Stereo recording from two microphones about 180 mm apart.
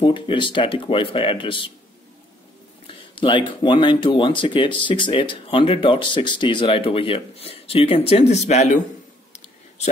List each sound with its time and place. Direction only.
0.0 s speech: 25° left (ahead or behind)
3.2 s speech: 25° left (ahead or behind)